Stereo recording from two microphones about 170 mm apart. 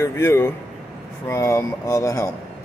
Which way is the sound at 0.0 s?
15° left (ahead or behind).